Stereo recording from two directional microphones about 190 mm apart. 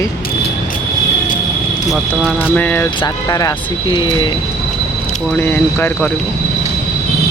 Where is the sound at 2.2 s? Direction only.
10° left (ahead or behind); by 4.3 s 25° left (ahead or behind).